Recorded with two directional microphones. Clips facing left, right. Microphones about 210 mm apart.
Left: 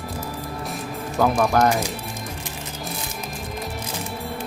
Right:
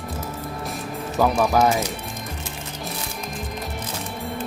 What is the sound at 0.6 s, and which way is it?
Music, centre (ahead or behind).